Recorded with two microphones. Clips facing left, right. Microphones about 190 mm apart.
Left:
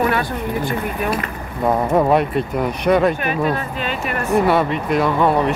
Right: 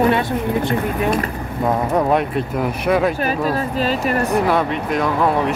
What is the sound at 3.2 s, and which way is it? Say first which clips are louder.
Speech: right 1 dB; 35° right (ahead or behind).